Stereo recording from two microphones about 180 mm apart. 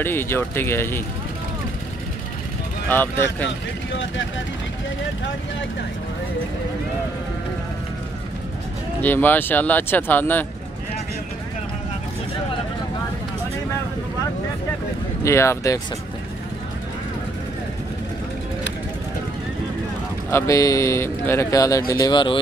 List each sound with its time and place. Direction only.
0.0 s speech: 15° left (ahead or behind)
2.9 s speech: 10° left (ahead or behind)
3.9 s speech: 90° left
9.0 s speech: 10° left (ahead or behind)
15.2 s speech: 15° left (ahead or behind)
20.2 s speech: 15° left (ahead or behind)